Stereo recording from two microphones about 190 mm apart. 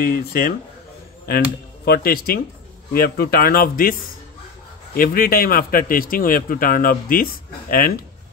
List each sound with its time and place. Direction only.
0.0 s a man's voice: 50° left (ahead or behind)
1.9 s a man's voice: 50° left (ahead or behind)